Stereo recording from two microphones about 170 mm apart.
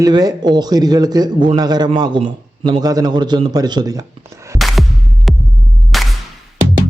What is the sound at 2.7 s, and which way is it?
Speech, 25° right (ahead or behind).